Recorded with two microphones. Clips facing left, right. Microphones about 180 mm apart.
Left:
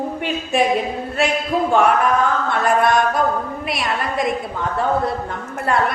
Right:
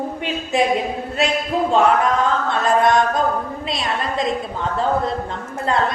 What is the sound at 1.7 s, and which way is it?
A woman's voice, 20° right (ahead or behind).